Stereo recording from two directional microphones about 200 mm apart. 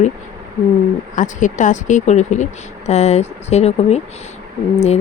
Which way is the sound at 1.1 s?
40° left (ahead or behind).